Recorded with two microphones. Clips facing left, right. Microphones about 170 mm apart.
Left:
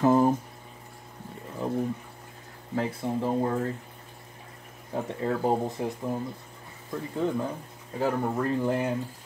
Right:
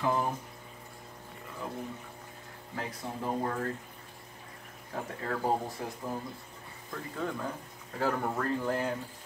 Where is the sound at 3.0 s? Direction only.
20° left (ahead or behind).